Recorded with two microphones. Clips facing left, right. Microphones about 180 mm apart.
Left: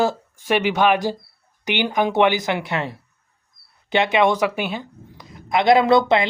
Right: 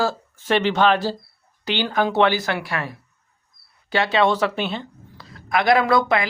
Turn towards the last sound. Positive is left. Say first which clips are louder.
# left 3 dB
turn(degrees=25)  # may be behind; listen again after turning